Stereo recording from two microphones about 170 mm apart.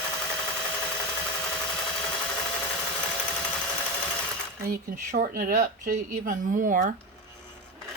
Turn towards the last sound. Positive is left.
turn(degrees=-50)  # may be behind; listen again after turning